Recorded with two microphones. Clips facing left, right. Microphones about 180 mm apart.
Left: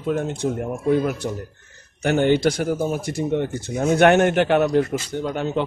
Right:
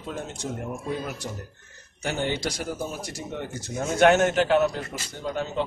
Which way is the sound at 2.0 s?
60° left (ahead or behind).